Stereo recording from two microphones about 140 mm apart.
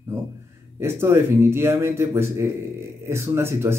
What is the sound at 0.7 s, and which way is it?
Speech, 20° right (ahead or behind).